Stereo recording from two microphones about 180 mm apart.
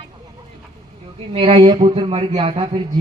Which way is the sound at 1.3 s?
30° right (ahead or behind).